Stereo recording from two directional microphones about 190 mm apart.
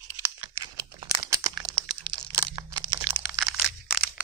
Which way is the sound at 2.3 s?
15° right (ahead or behind).